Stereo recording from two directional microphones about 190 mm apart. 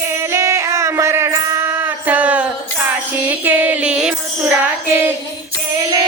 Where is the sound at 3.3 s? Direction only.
10° right (ahead or behind).